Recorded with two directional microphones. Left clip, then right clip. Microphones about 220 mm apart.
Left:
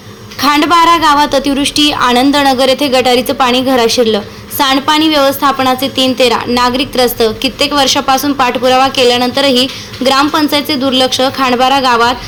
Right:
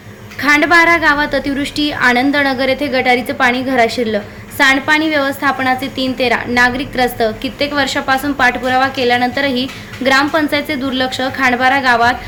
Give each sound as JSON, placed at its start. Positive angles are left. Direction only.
{"t": 0.4, "sound": "a woman's voice", "side_deg": 5}